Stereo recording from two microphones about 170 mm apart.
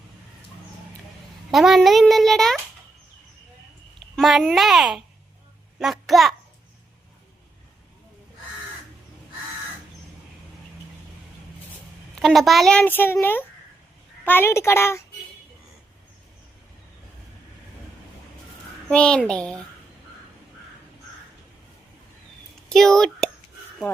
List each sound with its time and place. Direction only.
1.5 s a child's voice: centre (ahead or behind)
4.1 s a child's voice: centre (ahead or behind)
12.1 s a child's voice: centre (ahead or behind)
18.9 s a child's voice: 5° left (ahead or behind)
22.7 s a child's voice: centre (ahead or behind)